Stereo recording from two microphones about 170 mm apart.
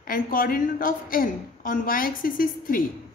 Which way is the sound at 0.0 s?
55° left (ahead or behind).